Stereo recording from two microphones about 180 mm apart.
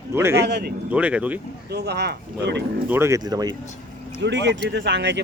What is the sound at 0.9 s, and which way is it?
Speech, 5° right (ahead or behind).